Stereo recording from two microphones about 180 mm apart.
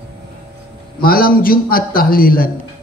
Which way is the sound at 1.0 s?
55° left (ahead or behind).